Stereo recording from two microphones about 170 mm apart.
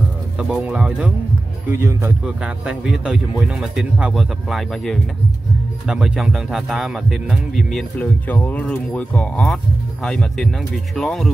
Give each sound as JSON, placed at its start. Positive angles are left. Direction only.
{"t": 0.4, "sound": "speech", "side_deg": -5}
{"t": 1.7, "sound": "speech", "side_deg": -15}